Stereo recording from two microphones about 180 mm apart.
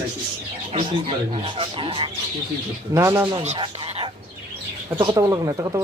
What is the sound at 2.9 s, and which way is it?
Speech, 15° right (ahead or behind).